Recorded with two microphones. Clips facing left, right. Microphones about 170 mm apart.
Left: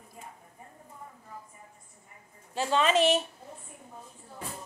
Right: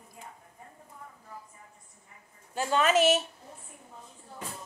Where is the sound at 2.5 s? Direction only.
5° right (ahead or behind).